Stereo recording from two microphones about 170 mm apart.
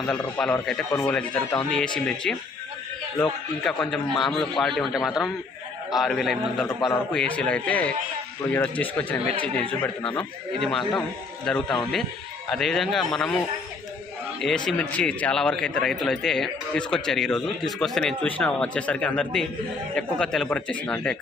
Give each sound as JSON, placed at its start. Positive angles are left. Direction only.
{"t": 0.2, "sound": "a man's voice", "side_deg": 10}
{"t": 14.4, "sound": "a man's voice", "side_deg": 5}